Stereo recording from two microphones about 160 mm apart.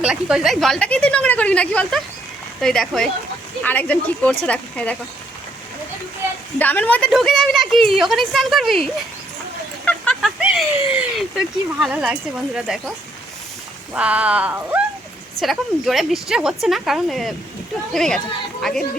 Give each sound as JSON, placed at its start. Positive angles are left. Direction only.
{"t": 0.0, "sound": "a woman's voice", "side_deg": -5}
{"t": 6.6, "sound": "a woman's voice", "side_deg": 10}
{"t": 9.8, "sound": "a sound", "side_deg": 5}
{"t": 10.9, "sound": "a woman's voice", "side_deg": -5}
{"t": 13.9, "sound": "a woman's voice", "side_deg": -10}